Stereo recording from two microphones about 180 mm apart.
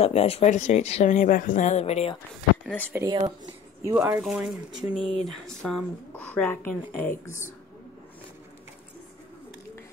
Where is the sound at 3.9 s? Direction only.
10° right (ahead or behind); by 7.4 s 15° left (ahead or behind).